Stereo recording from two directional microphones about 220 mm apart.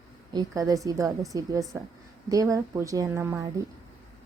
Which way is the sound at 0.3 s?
15° right (ahead or behind).